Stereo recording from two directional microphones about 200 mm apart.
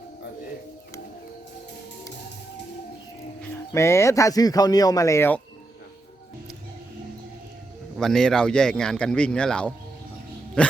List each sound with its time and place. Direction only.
3.7 s speech: 15° left (ahead or behind)
7.9 s speech: centre (ahead or behind)